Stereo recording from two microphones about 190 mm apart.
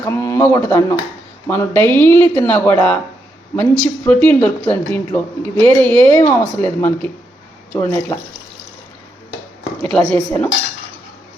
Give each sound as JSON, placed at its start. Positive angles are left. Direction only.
{"t": 0.0, "sound": "speech", "side_deg": 15}
{"t": 10.2, "sound": "speech", "side_deg": 10}